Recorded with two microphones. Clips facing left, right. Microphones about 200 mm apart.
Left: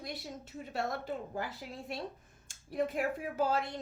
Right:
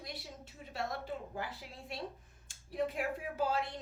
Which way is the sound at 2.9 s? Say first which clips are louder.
Left 4 dB; 45° left (ahead or behind).